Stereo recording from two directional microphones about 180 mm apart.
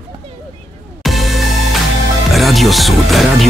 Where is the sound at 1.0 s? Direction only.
Centre (ahead or behind).